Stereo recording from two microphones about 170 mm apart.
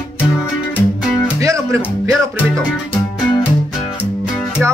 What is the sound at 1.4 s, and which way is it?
Music, 20° right (ahead or behind).